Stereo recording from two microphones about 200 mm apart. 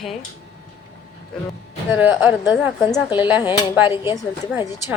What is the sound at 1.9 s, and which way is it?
Speech, 10° right (ahead or behind).